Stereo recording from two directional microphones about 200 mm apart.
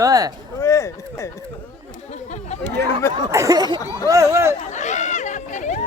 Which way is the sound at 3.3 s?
15° right (ahead or behind).